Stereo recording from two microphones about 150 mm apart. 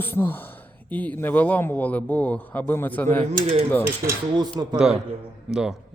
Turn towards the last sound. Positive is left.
turn(degrees=-5)  # may be behind; listen again after turning